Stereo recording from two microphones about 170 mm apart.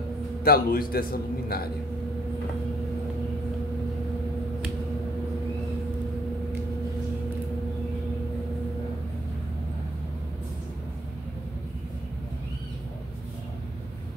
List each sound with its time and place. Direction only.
0.4 s a man's voice: 60° left (ahead or behind)